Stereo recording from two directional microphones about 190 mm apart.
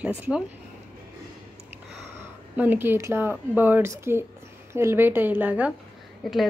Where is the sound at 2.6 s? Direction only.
10° right (ahead or behind).